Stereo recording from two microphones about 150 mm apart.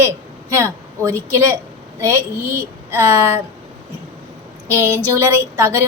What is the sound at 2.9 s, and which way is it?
Speech, 15° right (ahead or behind).